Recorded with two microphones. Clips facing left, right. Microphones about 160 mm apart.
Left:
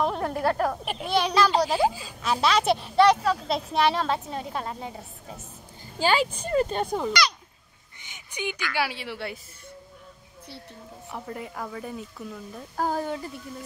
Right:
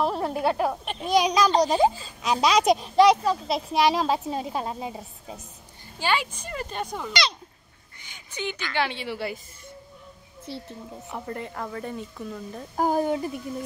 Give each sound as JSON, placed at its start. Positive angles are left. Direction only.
{"t": 0.0, "sound": "a woman's voice", "side_deg": -5}
{"t": 1.5, "sound": "a woman's voice", "side_deg": 5}
{"t": 2.2, "sound": "a woman's voice", "side_deg": -15}
{"t": 4.2, "sound": "a woman's voice", "side_deg": -20}
{"t": 6.0, "sound": "speech", "side_deg": 35}
{"t": 7.1, "sound": "a woman's voice", "side_deg": -25}
{"t": 8.0, "sound": "a sound", "side_deg": 15}
{"t": 8.7, "sound": "speech", "side_deg": 5}
{"t": 11.1, "sound": "speech", "side_deg": 0}
{"t": 12.7, "sound": "a woman's voice", "side_deg": -15}